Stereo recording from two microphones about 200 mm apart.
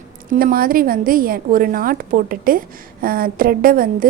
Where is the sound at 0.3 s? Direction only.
45° right (ahead or behind).